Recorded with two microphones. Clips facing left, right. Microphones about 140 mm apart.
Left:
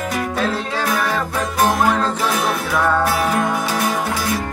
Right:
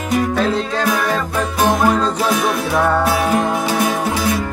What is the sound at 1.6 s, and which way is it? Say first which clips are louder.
Music: right 3 dB; 15° right (ahead or behind).